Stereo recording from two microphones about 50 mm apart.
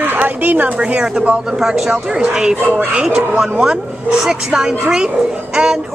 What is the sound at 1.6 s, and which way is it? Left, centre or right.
A woman's voice, centre.